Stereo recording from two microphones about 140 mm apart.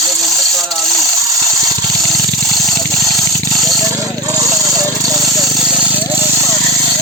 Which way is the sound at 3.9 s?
25° right (ahead or behind).